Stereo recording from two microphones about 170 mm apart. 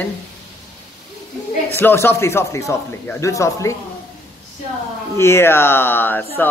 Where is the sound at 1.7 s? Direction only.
15° left (ahead or behind).